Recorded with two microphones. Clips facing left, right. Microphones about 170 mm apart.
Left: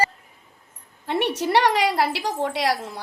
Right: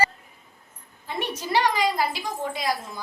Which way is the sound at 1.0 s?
70° left (ahead or behind).